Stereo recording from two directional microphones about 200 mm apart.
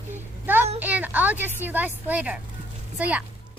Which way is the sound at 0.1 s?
10° right (ahead or behind).